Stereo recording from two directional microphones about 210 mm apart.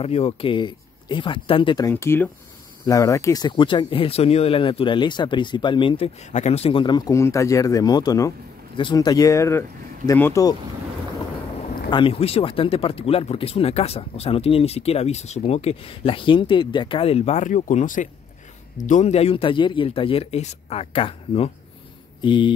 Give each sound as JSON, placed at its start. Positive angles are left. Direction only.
{"t": 0.0, "sound": "speech", "side_deg": 30}
{"t": 11.9, "sound": "speech", "side_deg": 25}
{"t": 22.2, "sound": "a sound", "side_deg": 25}